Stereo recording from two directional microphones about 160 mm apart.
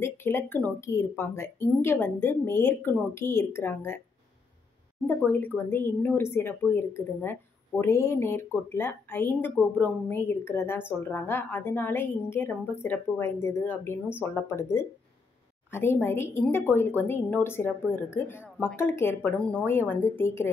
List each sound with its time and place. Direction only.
0.0 s a woman's voice: 15° left (ahead or behind)
5.0 s a woman's voice: 10° left (ahead or behind)